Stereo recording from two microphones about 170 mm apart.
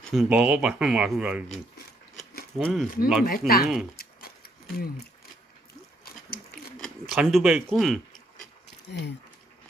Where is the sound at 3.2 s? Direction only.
60° left (ahead or behind).